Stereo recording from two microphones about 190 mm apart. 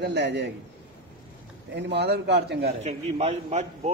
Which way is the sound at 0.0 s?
60° right (ahead or behind).